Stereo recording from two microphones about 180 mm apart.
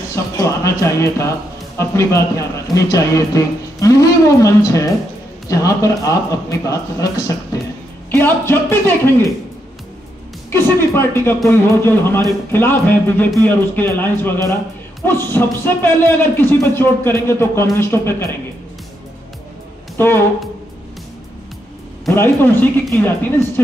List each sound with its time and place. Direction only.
0.1 s music: 15° left (ahead or behind)
1.8 s a man's voice: 15° left (ahead or behind)
10.5 s speech: 15° left (ahead or behind)
20.0 s speech: 15° left (ahead or behind)
22.1 s speech: 10° left (ahead or behind)